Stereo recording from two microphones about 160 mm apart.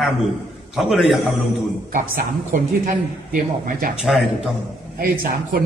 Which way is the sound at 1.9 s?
55° right (ahead or behind).